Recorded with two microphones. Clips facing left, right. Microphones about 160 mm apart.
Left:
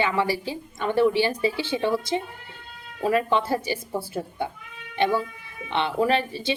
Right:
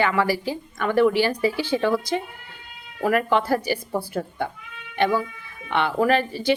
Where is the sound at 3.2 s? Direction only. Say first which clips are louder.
Right 3 dB; 25° left (ahead or behind).